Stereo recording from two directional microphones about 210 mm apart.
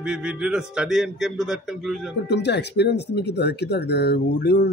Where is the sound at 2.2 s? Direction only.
55° left (ahead or behind).